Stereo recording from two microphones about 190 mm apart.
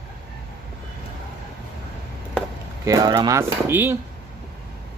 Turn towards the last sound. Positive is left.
turn(degrees=-10)  # may be behind; listen again after turning